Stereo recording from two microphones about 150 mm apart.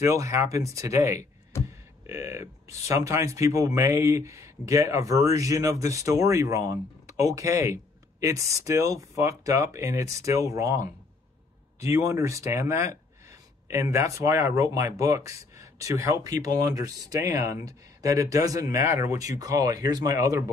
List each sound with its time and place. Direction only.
0.0 s speech: 20° right (ahead or behind)
1.5 s a sound: 20° left (ahead or behind)
2.0 s speech: 20° right (ahead or behind)